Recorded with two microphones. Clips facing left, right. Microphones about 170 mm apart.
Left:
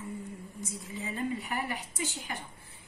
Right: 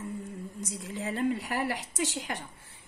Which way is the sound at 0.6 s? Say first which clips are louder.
Right 3 dB; 85° right.